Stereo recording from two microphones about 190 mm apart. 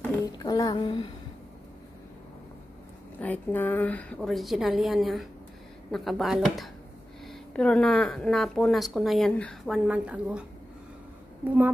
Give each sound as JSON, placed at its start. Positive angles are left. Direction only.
{"t": 0.2, "sound": "speech", "side_deg": 20}
{"t": 3.2, "sound": "a woman's voice", "side_deg": 10}
{"t": 11.4, "sound": "a woman's voice", "side_deg": -10}